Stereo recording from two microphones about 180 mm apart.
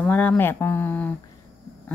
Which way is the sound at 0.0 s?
5° left (ahead or behind).